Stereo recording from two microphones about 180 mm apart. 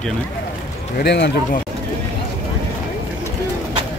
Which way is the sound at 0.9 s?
70° left (ahead or behind).